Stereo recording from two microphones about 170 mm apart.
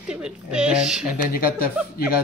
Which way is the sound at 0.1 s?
5° right (ahead or behind).